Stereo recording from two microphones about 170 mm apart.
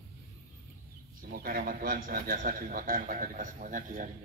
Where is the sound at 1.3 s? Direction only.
60° right (ahead or behind).